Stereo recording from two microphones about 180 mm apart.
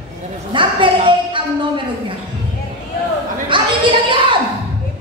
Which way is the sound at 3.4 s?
25° right (ahead or behind).